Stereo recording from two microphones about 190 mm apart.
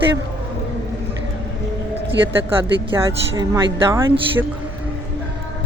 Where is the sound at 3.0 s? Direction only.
15° right (ahead or behind).